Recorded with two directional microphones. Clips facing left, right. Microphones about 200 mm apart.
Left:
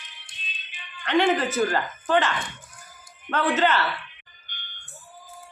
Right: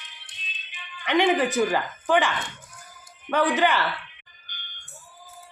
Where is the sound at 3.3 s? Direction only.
15° right (ahead or behind).